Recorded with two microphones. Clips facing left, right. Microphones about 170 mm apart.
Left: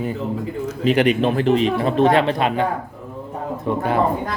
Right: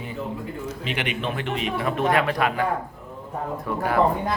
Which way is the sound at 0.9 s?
40° left (ahead or behind).